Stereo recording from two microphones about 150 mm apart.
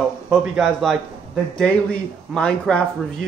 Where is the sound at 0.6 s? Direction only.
Centre (ahead or behind).